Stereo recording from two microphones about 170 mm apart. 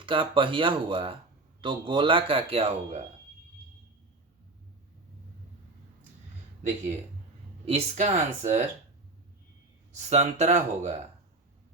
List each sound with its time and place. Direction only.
0.0 s speech: 30° right (ahead or behind)
7.6 s speech: 35° right (ahead or behind)
10.1 s speech: 40° right (ahead or behind)